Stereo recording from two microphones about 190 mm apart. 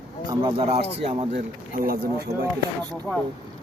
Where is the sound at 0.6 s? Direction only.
35° right (ahead or behind).